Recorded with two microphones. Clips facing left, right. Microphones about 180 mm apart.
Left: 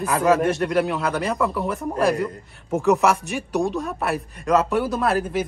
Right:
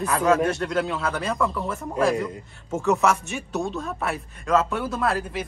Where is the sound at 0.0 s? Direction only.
Centre (ahead or behind).